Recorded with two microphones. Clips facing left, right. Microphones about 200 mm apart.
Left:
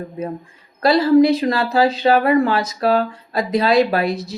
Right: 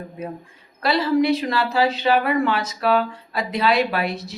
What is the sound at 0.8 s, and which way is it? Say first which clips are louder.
A woman's voice: left 7 dB; 35° left (ahead or behind).